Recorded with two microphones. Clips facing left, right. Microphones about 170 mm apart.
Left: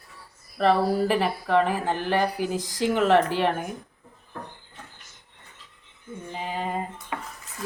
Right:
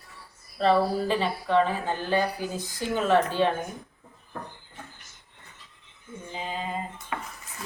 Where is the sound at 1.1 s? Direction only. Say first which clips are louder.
Left 1 dB; 70° left (ahead or behind); by 3.5 s 85° left.